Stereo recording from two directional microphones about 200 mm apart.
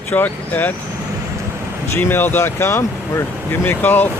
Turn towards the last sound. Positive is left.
turn(degrees=10)  # may be behind; listen again after turning